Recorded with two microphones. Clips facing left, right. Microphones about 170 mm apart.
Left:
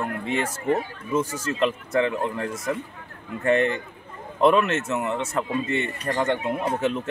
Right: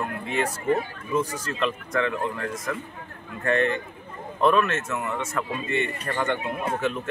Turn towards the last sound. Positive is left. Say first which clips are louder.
# left 2 dB
turn(degrees=20)  # may be behind; listen again after turning